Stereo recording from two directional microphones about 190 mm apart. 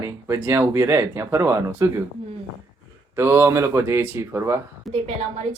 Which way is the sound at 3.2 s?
15° right (ahead or behind).